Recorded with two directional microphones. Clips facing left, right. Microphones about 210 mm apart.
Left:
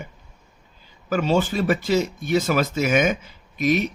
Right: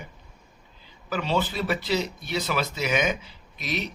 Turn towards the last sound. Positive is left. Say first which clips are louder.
# left 11 dB
turn(degrees=50)  # may be behind; listen again after turning